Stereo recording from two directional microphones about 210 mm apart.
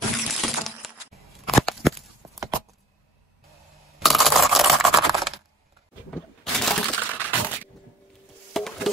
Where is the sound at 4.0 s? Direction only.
Centre (ahead or behind).